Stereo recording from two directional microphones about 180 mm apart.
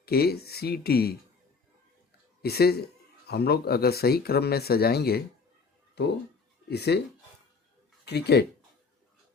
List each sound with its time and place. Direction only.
0.0 s speech: 60° left (ahead or behind)
2.4 s speech: 60° left (ahead or behind)
8.0 s speech: 65° left (ahead or behind)